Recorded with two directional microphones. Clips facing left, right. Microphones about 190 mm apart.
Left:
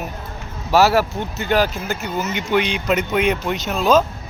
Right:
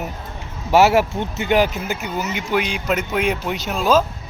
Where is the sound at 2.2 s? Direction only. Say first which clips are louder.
Left 2 dB; 5° right (ahead or behind).